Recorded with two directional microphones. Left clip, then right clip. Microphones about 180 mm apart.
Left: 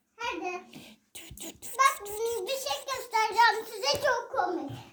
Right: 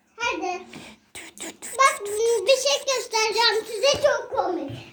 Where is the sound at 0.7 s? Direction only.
20° left (ahead or behind).